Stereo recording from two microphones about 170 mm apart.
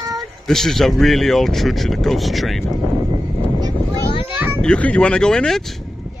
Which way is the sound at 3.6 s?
25° right (ahead or behind).